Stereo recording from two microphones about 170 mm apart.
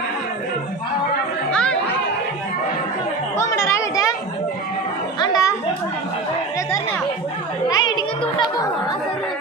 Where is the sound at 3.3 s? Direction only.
15° left (ahead or behind).